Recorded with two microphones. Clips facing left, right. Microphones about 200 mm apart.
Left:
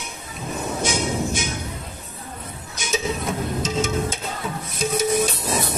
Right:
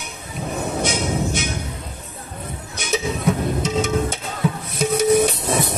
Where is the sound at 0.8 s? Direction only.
65° right (ahead or behind).